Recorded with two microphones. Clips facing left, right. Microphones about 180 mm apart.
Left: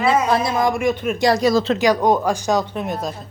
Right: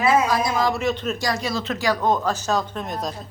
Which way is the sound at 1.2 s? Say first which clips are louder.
Left 9 dB; 40° left (ahead or behind).